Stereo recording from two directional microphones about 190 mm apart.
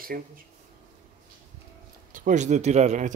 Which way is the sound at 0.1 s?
50° right (ahead or behind).